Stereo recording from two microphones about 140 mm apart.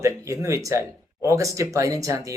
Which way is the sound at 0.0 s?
20° right (ahead or behind).